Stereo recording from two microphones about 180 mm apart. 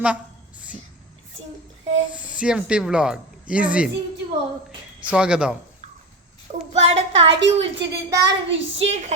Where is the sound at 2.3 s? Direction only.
5° right (ahead or behind).